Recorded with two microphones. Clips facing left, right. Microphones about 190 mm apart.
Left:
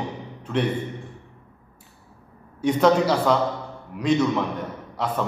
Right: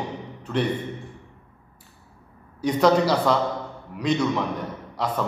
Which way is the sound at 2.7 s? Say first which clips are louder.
Even; 5° left (ahead or behind).